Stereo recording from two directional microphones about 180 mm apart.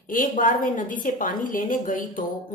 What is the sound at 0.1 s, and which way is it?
Speech, 50° left (ahead or behind).